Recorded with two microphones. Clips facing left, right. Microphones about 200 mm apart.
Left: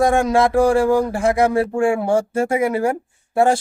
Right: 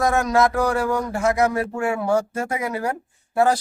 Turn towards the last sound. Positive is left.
turn(degrees=25)  # may be behind; listen again after turning